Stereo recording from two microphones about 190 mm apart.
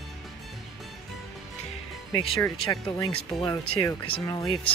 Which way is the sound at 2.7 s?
20° left (ahead or behind).